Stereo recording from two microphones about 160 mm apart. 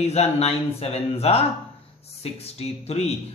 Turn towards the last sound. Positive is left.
turn(degrees=40)  # may be behind; listen again after turning